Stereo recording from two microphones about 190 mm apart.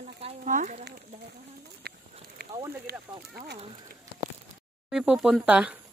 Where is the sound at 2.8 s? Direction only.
55° right (ahead or behind).